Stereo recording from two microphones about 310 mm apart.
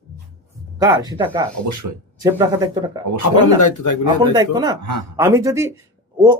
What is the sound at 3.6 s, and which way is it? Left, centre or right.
Speech, left.